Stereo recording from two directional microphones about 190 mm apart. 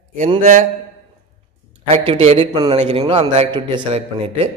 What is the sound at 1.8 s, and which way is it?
A man's voice, 35° right (ahead or behind).